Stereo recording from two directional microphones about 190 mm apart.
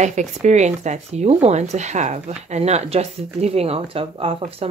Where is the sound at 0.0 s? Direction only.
40° right (ahead or behind).